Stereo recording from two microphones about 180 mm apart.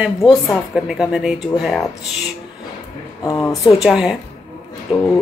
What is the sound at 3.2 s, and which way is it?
Speech, 20° left (ahead or behind).